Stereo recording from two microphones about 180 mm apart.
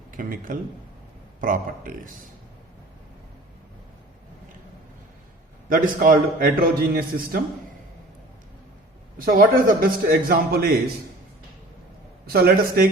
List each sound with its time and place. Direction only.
0.1 s a man's voice: 50° right (ahead or behind)
5.6 s a man's voice: 50° right (ahead or behind)
9.1 s a man's voice: 50° right (ahead or behind)
12.2 s a man's voice: 60° right (ahead or behind)